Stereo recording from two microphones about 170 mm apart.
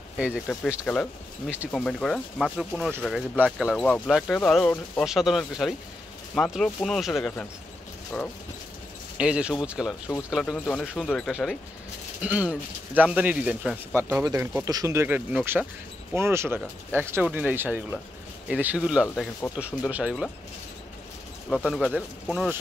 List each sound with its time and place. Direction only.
0.2 s speech: 5° right (ahead or behind)
1.7 s speech: 5° left (ahead or behind)
9.2 s speech: 5° right (ahead or behind)
19.4 s speech: 10° left (ahead or behind)
19.9 s speech: 5° right (ahead or behind)
21.5 s speech: 5° left (ahead or behind)